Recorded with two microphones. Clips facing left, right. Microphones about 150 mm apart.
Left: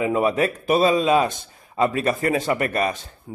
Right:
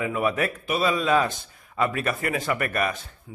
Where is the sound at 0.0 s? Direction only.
25° left (ahead or behind).